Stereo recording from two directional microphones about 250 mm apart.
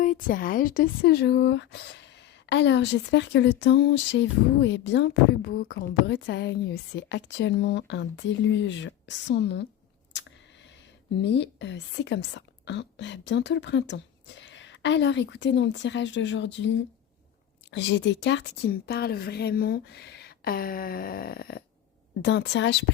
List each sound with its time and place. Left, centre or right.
0.0 s speech: left
10.1 s a sound: left
11.2 s speech: left
17.7 s a woman's voice: left